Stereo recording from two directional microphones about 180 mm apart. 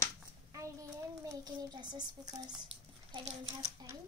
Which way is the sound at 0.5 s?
20° right (ahead or behind).